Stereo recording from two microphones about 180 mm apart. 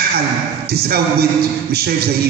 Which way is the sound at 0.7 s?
60° right (ahead or behind).